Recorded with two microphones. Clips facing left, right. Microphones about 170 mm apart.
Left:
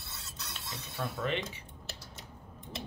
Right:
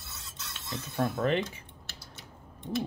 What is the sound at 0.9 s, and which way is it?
Speech, 45° right (ahead or behind).